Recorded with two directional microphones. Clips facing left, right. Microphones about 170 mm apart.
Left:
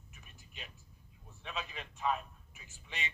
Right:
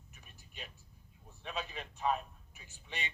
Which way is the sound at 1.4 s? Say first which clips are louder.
Right 2 dB; 40° right (ahead or behind).